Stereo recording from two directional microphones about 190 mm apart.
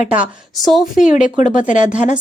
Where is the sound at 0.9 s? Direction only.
40° left (ahead or behind).